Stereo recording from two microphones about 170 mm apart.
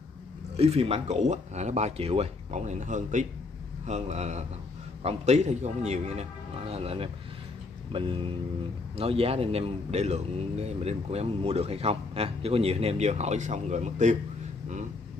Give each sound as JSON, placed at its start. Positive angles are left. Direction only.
{"t": 0.6, "sound": "speech", "side_deg": -35}